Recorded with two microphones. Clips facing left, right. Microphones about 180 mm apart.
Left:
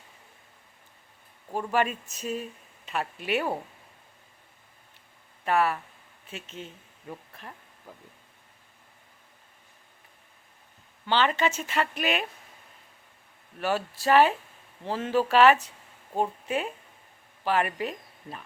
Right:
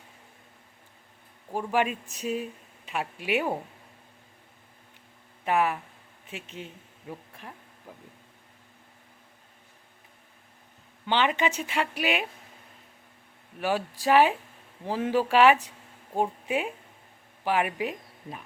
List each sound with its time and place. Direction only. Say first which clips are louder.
1.5 s speech: even; 15° right (ahead or behind)
5.5 s speech: even; 15° right (ahead or behind)
11.0 s speech: even; 15° right (ahead or behind)
13.6 s speech: even; 15° right (ahead or behind)